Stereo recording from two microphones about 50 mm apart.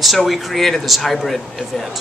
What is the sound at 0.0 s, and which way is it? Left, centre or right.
A man's voice, centre.